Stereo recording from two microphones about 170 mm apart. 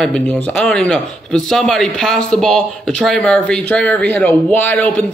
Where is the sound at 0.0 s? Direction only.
5° left (ahead or behind).